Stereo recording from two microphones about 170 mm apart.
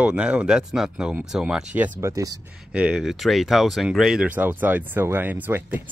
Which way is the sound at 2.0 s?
20° right (ahead or behind).